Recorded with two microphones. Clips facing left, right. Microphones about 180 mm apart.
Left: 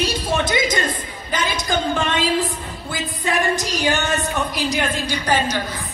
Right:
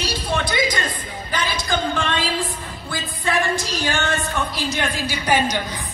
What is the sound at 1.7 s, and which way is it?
A woman's voice, 20° left (ahead or behind).